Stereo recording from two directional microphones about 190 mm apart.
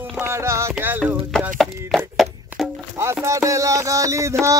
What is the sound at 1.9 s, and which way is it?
Music, centre (ahead or behind).